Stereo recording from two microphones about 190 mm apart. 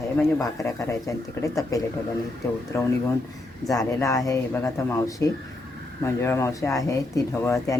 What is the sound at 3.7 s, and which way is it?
Speech, 15° left (ahead or behind).